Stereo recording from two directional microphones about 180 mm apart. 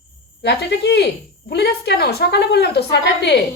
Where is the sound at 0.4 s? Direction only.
70° left (ahead or behind).